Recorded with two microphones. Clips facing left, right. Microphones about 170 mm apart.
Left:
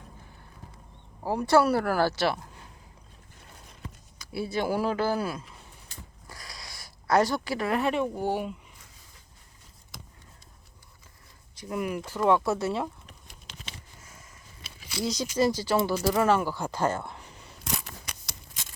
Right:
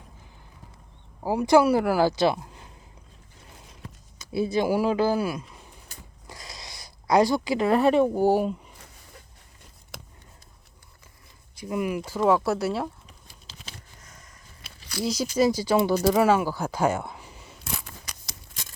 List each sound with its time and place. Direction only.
1.2 s speech: 10° right (ahead or behind)
4.2 s speech: 20° right (ahead or behind)
6.2 s zipper: 20° right (ahead or behind)
7.7 s speech: 35° right (ahead or behind)
9.9 s a sound: 70° right (ahead or behind)
11.5 s speech: 10° right (ahead or behind)
14.8 s speech: centre (ahead or behind)
18.0 s a sound: 60° left (ahead or behind)